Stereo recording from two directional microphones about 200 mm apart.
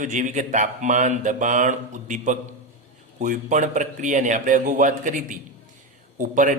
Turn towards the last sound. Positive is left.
turn(degrees=-40)  # may be behind; listen again after turning